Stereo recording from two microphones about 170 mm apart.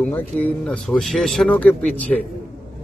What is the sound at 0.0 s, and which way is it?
A man's voice, 10° left (ahead or behind).